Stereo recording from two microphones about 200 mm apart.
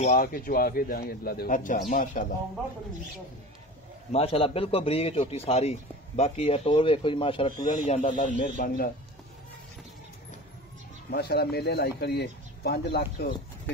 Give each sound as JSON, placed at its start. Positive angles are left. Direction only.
{"t": 0.2, "sound": "a man's voice", "side_deg": 45}
{"t": 4.1, "sound": "a man's voice", "side_deg": 30}
{"t": 7.6, "sound": "speech", "side_deg": 40}
{"t": 11.1, "sound": "speech", "side_deg": 55}